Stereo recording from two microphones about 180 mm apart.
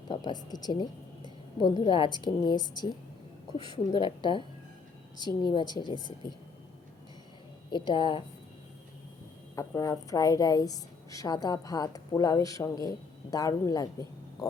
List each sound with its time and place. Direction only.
0.1 s a woman's voice: 25° left (ahead or behind)
7.7 s a woman's voice: 25° left (ahead or behind)
9.6 s a woman's voice: 15° left (ahead or behind)